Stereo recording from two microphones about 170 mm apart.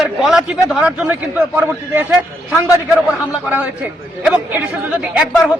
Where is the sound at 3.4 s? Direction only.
10° right (ahead or behind).